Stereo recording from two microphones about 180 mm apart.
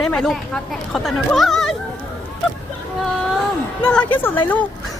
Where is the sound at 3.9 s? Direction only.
10° left (ahead or behind).